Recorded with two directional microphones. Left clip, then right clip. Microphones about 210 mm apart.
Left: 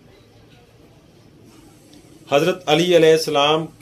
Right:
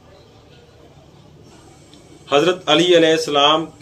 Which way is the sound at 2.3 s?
40° left (ahead or behind).